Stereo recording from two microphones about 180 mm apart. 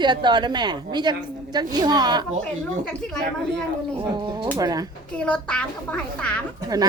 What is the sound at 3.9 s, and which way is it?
Speech, 25° right (ahead or behind).